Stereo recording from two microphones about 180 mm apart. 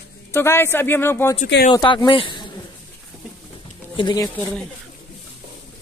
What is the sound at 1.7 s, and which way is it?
Speech, 25° left (ahead or behind).